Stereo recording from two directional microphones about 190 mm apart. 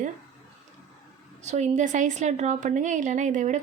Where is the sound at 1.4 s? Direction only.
35° right (ahead or behind).